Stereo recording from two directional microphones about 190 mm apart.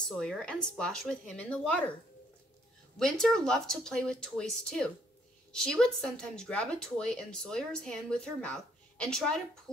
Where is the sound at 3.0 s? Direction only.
Centre (ahead or behind).